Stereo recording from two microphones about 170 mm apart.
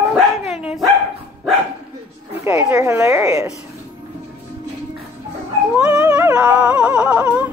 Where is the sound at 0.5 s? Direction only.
Centre (ahead or behind).